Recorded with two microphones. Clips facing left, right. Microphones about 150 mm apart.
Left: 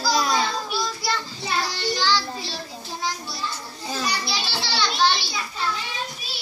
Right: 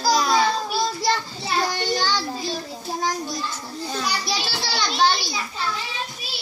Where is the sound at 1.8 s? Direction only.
45° right (ahead or behind).